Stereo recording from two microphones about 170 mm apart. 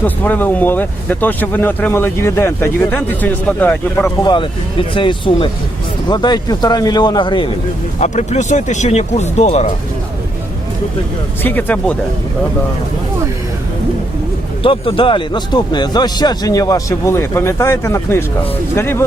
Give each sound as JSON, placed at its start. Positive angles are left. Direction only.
{"t": 0.0, "sound": "speech", "side_deg": 10}
{"t": 4.2, "sound": "speech", "side_deg": 25}
{"t": 7.9, "sound": "speech", "side_deg": 40}
{"t": 11.4, "sound": "speech", "side_deg": 10}
{"t": 14.6, "sound": "speech", "side_deg": 30}